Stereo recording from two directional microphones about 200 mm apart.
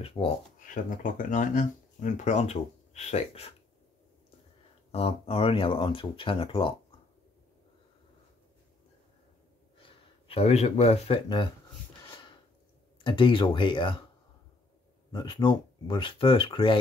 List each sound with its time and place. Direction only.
0.0 s speech: 30° left (ahead or behind)
4.9 s speech: 30° left (ahead or behind)
9.8 s speech: 30° left (ahead or behind)
12.0 s a sound: 25° left (ahead or behind)
13.0 s speech: 25° left (ahead or behind)
15.0 s speech: 20° left (ahead or behind)